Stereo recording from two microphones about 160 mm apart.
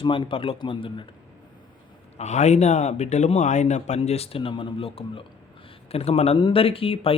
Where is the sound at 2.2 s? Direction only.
45° left (ahead or behind).